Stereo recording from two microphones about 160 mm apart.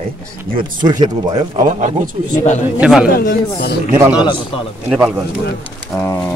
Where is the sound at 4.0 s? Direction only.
10° right (ahead or behind).